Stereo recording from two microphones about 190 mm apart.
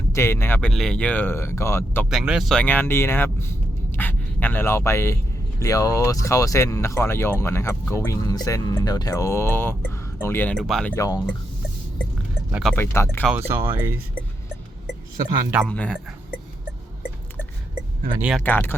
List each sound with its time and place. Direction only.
0.1 s speech: 15° left (ahead or behind)
2.0 s speech: 5° right (ahead or behind); by 3.5 s 10° left (ahead or behind)
3.9 s a sound: 10° left (ahead or behind)
5.5 s speech: 15° left (ahead or behind)
10.9 s speech: 20° left (ahead or behind)
12.5 s speech: 5° right (ahead or behind)
12.7 s speech: 15° left (ahead or behind)
13.2 s speech: 10° right (ahead or behind)
15.2 s speech: 10° right (ahead or behind)
15.6 s speech: 5° left (ahead or behind)
18.2 s speech: 5° right (ahead or behind)
18.4 s speech: 10° left (ahead or behind)